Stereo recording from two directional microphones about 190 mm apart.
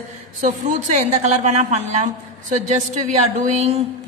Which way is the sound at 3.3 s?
35° right (ahead or behind).